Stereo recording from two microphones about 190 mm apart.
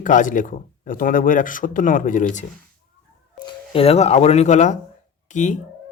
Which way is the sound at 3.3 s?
25° left (ahead or behind).